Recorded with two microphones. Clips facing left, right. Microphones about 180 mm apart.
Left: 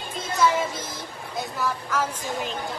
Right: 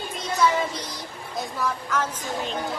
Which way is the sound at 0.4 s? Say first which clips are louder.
Even; centre (ahead or behind).